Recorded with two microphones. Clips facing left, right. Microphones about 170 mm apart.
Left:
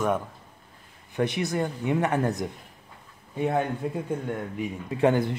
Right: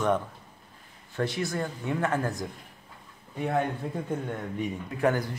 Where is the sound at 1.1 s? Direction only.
20° left (ahead or behind).